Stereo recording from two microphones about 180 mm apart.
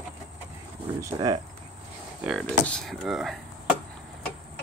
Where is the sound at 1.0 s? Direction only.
25° right (ahead or behind).